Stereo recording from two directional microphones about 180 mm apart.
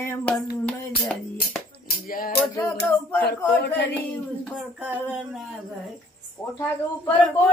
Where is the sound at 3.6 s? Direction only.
70° left (ahead or behind).